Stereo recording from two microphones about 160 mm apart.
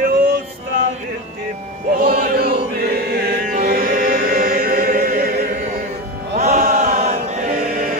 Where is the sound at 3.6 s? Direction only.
55° right (ahead or behind).